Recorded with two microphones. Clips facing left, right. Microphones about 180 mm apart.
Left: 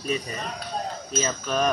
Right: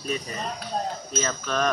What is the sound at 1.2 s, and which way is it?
Speech, 10° left (ahead or behind).